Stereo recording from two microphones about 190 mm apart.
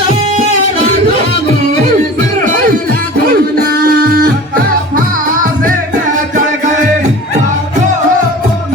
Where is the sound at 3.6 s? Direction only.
50° right (ahead or behind).